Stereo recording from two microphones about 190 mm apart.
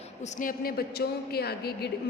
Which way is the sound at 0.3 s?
50° left (ahead or behind).